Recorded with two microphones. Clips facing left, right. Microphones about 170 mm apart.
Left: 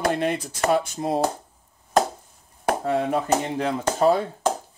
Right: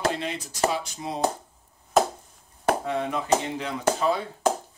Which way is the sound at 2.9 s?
45° left (ahead or behind).